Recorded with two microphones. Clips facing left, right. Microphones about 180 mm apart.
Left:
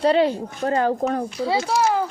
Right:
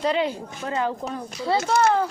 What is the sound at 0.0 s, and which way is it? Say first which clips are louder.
Speech: left 6 dB; 35° left (ahead or behind).